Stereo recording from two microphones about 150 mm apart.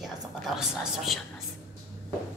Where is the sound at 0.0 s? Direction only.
5° right (ahead or behind).